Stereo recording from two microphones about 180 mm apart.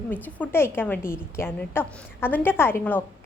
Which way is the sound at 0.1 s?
10° left (ahead or behind).